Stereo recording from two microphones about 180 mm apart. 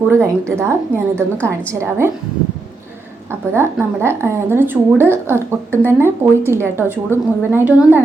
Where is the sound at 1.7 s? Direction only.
15° right (ahead or behind).